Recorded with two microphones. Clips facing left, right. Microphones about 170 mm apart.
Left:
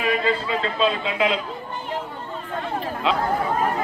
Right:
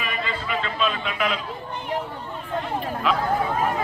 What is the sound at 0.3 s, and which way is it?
A man's voice, 30° left (ahead or behind).